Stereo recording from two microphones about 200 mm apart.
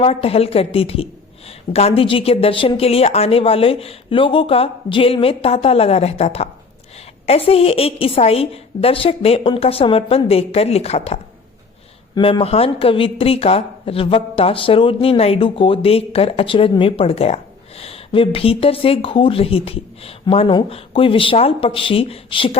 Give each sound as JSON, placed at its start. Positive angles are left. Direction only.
{"t": 0.0, "sound": "a woman's voice", "side_deg": 30}